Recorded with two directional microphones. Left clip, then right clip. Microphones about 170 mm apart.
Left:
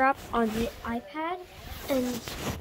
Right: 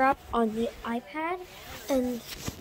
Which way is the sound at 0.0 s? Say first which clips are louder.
Even; 10° right (ahead or behind).